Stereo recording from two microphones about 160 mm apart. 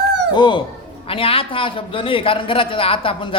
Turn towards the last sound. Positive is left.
turn(degrees=35)  # may be behind; listen again after turning